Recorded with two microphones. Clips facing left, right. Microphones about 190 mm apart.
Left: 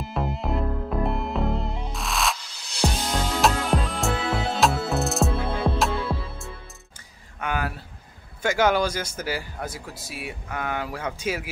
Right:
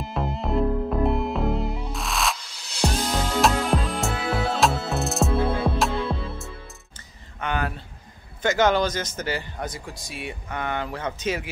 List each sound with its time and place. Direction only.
0.1 s music: centre (ahead or behind)
7.3 s a sound: 5° left (ahead or behind)
8.4 s speech: 10° left (ahead or behind)